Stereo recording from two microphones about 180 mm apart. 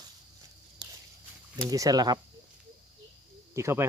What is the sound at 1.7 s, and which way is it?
Speech, 20° right (ahead or behind).